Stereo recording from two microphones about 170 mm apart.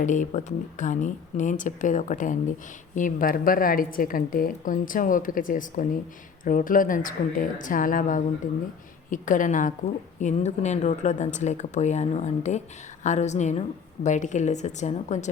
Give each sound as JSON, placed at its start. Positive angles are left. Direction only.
{"t": 0.0, "sound": "a woman's voice", "side_deg": 45}